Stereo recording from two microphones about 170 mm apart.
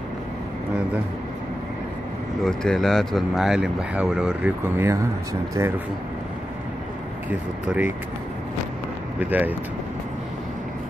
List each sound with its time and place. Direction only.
2.4 s speech: 5° left (ahead or behind); by 5.7 s 15° right (ahead or behind)
7.2 s speech: 10° right (ahead or behind)
9.2 s speech: 10° right (ahead or behind)